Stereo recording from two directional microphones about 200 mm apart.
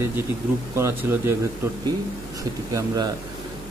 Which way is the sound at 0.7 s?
15° right (ahead or behind).